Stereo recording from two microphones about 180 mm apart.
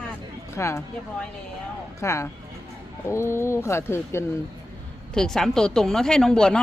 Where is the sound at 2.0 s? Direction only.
15° left (ahead or behind).